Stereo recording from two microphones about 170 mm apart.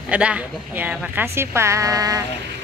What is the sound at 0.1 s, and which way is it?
A woman's voice, 5° right (ahead or behind).